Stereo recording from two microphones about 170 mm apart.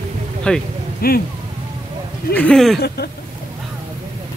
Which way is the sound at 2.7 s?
70° left (ahead or behind).